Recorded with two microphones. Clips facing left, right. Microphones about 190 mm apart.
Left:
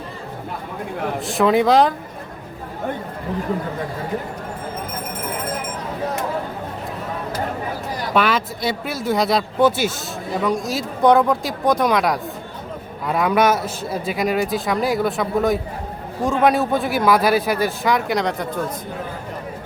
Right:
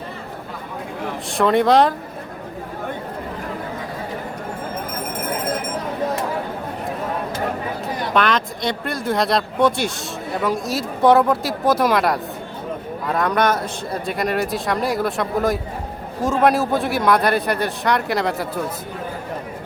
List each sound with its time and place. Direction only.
1.3 s a man's voice: centre (ahead or behind)
8.1 s a man's voice: 5° left (ahead or behind)